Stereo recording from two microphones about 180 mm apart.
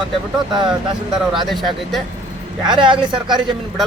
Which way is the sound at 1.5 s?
Centre (ahead or behind).